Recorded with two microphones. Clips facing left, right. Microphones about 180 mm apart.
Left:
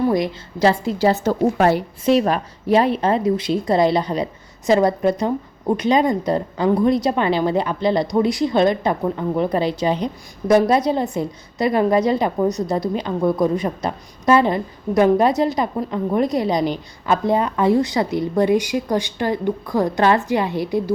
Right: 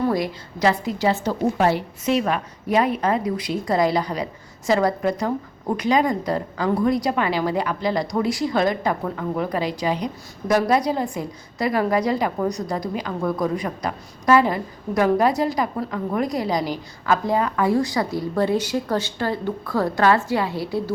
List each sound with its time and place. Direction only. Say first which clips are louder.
0.6 s a woman's voice: left 4 dB; 30° left (ahead or behind); by 1.8 s 55° left (ahead or behind)
2.0 s a woman's voice: left 5 dB; 35° left (ahead or behind); by 20.8 s 20° left (ahead or behind)